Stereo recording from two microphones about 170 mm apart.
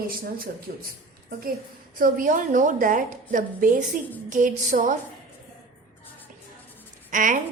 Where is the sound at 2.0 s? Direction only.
55° right (ahead or behind).